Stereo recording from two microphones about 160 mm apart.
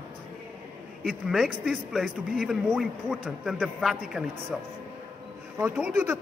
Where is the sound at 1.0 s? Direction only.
5° right (ahead or behind).